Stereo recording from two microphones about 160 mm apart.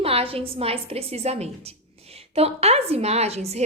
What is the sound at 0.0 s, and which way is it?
A woman's voice, 35° right (ahead or behind).